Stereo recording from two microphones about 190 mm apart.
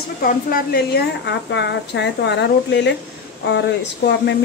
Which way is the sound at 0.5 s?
55° left (ahead or behind).